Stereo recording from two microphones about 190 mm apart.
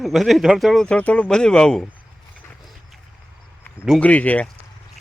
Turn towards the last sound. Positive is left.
turn(degrees=10)  # may be behind; listen again after turning